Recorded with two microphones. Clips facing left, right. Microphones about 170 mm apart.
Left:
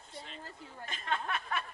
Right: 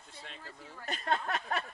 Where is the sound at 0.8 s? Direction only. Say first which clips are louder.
Right 3 dB; 40° right (ahead or behind).